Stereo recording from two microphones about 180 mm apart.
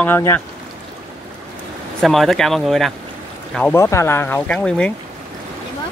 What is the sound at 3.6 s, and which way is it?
Speech, 15° left (ahead or behind).